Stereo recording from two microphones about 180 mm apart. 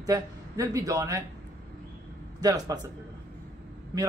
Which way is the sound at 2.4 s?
20° right (ahead or behind).